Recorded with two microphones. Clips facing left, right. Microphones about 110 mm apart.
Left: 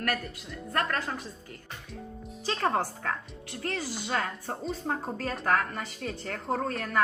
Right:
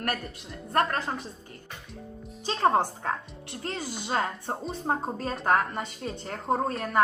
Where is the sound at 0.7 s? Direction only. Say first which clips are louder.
Right 4 dB; 30° right (ahead or behind).